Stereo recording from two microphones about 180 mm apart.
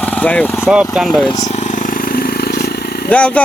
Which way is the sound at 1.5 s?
40° left (ahead or behind).